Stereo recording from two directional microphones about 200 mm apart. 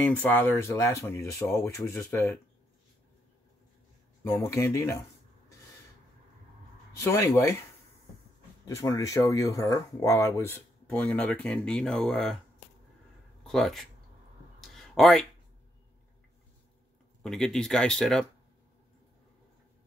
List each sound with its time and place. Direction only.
0.2 s speech: 10° left (ahead or behind)
4.2 s speech: 15° left (ahead or behind)
7.0 s speech: 15° left (ahead or behind)
8.6 s speech: 15° left (ahead or behind)
13.4 s speech: centre (ahead or behind)
14.7 s a sound: centre (ahead or behind)
17.2 s speech: centre (ahead or behind)